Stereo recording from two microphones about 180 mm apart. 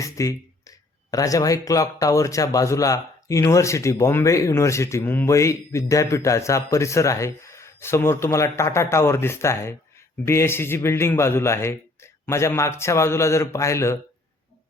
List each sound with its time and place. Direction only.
0.0 s speech: 20° left (ahead or behind)